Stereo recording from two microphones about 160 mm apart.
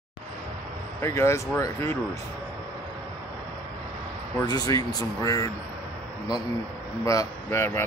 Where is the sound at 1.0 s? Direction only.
15° left (ahead or behind).